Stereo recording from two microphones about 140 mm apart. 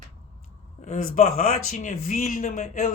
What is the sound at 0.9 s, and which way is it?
Speech, 65° left (ahead or behind).